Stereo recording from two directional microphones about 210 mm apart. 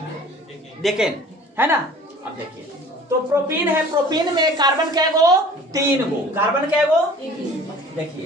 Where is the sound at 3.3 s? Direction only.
10° right (ahead or behind).